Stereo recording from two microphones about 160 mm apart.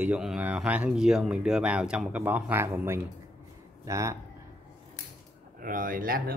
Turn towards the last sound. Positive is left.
turn(degrees=-60)  # may be behind; listen again after turning